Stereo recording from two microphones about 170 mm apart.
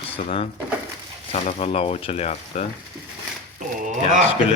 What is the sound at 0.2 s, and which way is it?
Speech, 35° left (ahead or behind).